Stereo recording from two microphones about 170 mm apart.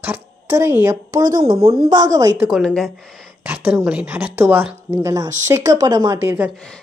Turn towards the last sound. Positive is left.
turn(degrees=-10)  # may be behind; listen again after turning